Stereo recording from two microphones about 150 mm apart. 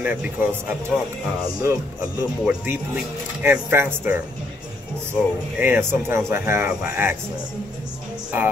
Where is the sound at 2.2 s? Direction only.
15° right (ahead or behind).